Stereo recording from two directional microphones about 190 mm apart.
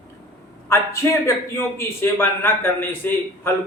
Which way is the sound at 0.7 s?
15° left (ahead or behind).